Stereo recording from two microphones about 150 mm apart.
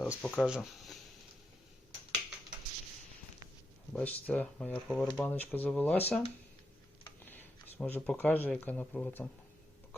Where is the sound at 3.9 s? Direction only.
10° left (ahead or behind).